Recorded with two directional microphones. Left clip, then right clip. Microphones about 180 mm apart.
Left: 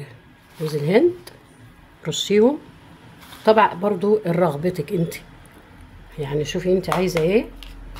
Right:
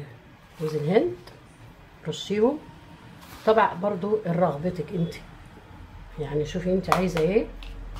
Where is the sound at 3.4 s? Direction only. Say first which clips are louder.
Left 5 dB; 60° left (ahead or behind).